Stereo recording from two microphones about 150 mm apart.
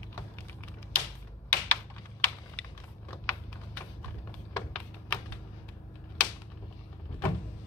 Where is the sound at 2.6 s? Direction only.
10° left (ahead or behind).